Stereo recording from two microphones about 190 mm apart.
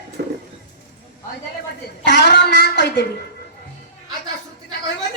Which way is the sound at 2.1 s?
60° left (ahead or behind).